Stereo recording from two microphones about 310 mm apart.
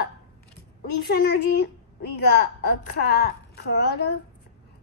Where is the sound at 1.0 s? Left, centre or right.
Left.